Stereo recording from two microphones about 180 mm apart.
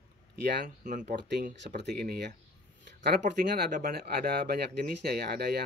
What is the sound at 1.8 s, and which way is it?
Speech, 60° right (ahead or behind).